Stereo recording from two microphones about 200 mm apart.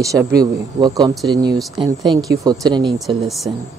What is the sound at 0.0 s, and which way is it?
Speech, 15° right (ahead or behind).